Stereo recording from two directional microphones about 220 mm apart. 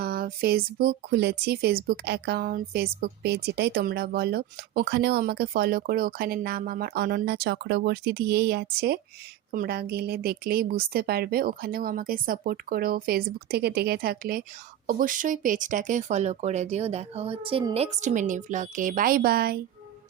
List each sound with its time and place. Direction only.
0.0 s speech: 40° right (ahead or behind)